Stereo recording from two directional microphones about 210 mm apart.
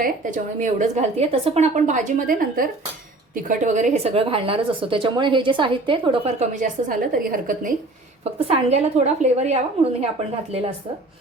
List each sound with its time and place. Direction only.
0.0 s a woman's voice: 35° right (ahead or behind)
8.2 s a woman's voice: 30° right (ahead or behind)